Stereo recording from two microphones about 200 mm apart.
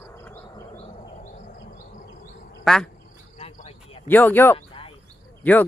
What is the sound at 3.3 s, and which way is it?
Cricket, 30° left (ahead or behind).